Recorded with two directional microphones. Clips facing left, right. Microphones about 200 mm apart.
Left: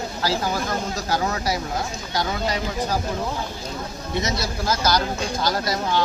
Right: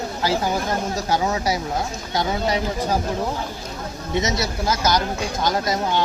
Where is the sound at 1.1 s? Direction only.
20° right (ahead or behind).